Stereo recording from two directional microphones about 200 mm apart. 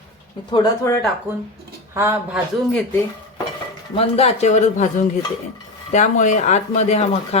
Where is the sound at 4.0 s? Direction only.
30° left (ahead or behind).